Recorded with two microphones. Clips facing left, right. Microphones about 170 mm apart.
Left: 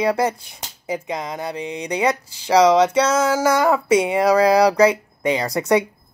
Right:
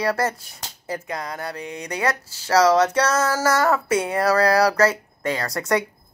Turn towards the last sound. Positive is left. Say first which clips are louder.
# left 5 dB
turn(degrees=20)  # may be behind; listen again after turning